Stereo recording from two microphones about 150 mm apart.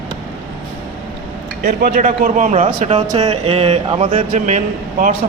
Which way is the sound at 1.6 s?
75° right (ahead or behind).